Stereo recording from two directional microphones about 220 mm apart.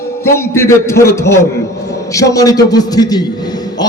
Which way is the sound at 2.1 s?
15° left (ahead or behind).